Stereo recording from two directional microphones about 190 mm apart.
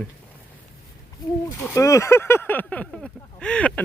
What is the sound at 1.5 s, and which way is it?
Speech, 15° left (ahead or behind).